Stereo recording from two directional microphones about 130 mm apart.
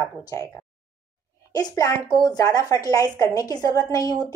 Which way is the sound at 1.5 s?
30° left (ahead or behind).